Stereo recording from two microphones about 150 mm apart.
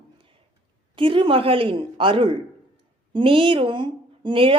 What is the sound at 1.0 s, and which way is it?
Speech, 35° right (ahead or behind).